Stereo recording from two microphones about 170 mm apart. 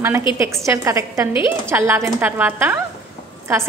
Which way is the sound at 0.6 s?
20° right (ahead or behind).